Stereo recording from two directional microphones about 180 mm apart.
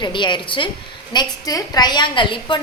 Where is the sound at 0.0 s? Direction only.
25° left (ahead or behind).